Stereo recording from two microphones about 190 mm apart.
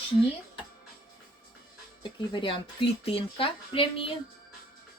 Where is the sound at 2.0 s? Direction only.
25° left (ahead or behind).